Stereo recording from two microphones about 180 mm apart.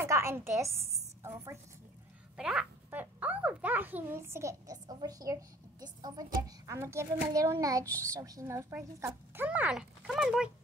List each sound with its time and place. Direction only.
0.0 s a woman's voice: 15° right (ahead or behind)
2.3 s a child's voice: 5° right (ahead or behind)